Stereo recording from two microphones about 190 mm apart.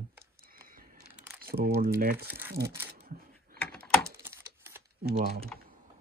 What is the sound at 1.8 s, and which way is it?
Speech, 55° right (ahead or behind).